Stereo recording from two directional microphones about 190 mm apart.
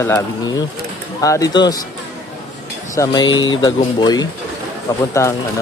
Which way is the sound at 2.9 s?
20° left (ahead or behind).